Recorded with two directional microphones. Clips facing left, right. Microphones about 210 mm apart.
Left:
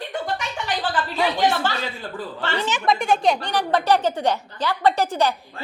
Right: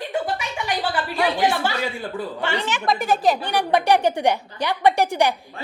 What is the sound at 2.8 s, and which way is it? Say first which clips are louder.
Speech: even; centre (ahead or behind).